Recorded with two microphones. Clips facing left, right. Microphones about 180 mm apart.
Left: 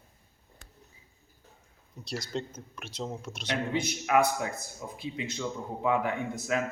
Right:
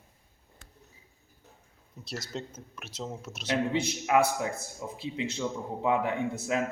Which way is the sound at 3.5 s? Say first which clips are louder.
Right 2 dB; 30° right (ahead or behind).